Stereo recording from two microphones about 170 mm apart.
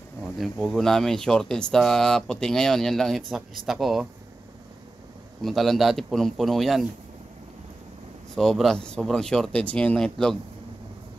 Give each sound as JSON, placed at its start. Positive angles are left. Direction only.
{"t": 0.2, "sound": "speech", "side_deg": 0}
{"t": 5.4, "sound": "speech", "side_deg": 0}
{"t": 8.4, "sound": "speech", "side_deg": 0}